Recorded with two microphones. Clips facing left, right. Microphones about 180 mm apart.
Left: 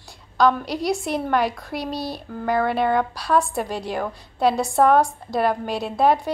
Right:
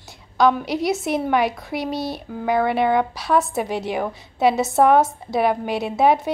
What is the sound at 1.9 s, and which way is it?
Speech, 20° right (ahead or behind).